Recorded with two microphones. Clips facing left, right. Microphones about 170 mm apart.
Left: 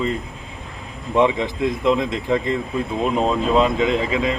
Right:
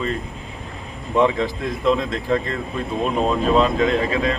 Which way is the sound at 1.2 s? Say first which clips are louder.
Left 1 dB; 20° left (ahead or behind).